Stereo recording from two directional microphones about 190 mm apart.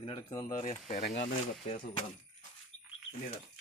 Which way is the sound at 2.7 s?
90° left.